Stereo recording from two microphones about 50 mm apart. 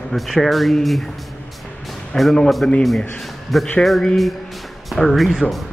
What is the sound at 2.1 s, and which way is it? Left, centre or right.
Speech, centre.